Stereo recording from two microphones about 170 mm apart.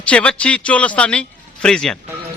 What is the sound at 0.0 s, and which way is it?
A man's voice, 5° left (ahead or behind).